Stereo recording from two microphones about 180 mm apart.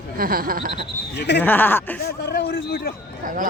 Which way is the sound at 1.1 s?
70° left (ahead or behind).